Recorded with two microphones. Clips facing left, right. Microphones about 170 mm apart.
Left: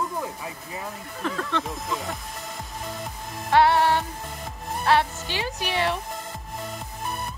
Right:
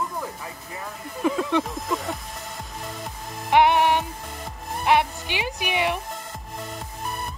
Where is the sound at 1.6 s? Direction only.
Centre (ahead or behind).